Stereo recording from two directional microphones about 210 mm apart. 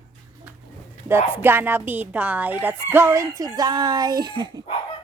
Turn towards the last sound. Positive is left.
turn(degrees=-20)  # may be behind; listen again after turning